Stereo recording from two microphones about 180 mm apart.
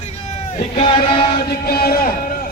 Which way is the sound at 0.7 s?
30° left (ahead or behind).